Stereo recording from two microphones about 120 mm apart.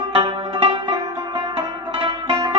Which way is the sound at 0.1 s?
45° right (ahead or behind).